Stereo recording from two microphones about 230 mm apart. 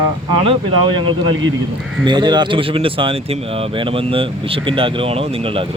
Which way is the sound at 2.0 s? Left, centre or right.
Centre.